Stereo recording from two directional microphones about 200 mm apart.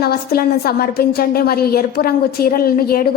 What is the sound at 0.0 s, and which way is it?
A woman's voice, 50° left (ahead or behind).